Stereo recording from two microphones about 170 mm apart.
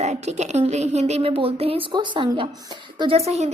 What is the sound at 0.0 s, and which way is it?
A woman's voice, 40° right (ahead or behind).